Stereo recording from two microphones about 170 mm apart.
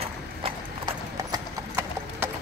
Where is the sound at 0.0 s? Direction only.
30° right (ahead or behind).